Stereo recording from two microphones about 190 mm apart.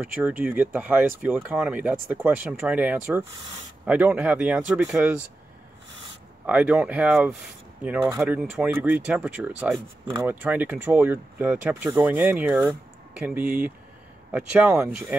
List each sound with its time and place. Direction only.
0.0 s speech: 10° right (ahead or behind)
6.4 s speech: 5° right (ahead or behind)